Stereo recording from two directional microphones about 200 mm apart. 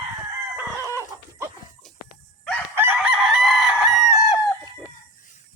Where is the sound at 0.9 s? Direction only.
15° right (ahead or behind).